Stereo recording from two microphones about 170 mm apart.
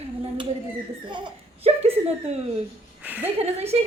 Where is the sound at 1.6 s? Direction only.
35° right (ahead or behind).